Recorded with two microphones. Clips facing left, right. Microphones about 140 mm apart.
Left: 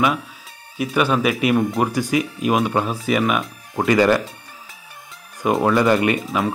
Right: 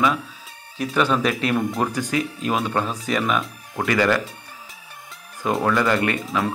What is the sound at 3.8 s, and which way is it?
Speech, 20° left (ahead or behind).